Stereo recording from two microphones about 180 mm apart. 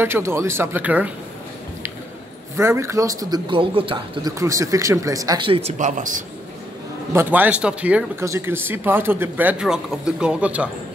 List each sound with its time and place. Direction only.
0.0 s speech: 15° right (ahead or behind)
2.5 s speech: 15° right (ahead or behind); by 6.1 s 45° right (ahead or behind)
7.1 s speech: 10° right (ahead or behind)